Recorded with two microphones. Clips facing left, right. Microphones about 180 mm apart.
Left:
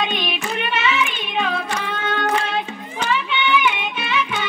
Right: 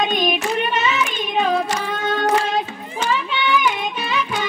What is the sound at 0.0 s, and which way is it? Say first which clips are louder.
Music: right 4 dB; 40° right (ahead or behind).